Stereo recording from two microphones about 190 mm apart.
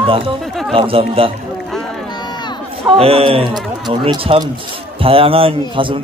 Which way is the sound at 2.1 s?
25° left (ahead or behind).